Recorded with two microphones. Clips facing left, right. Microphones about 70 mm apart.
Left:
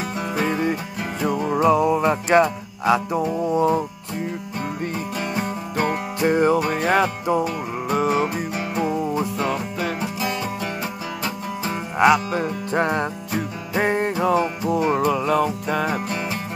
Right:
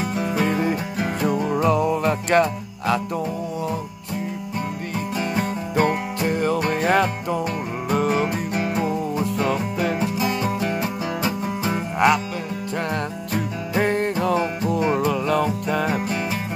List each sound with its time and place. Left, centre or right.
1.2 s music: centre
3.5 s music: left
6.2 s music: left
6.7 s music: centre
8.8 s music: centre
9.4 s music: centre
12.0 s music: centre
12.4 s music: left
13.3 s music: centre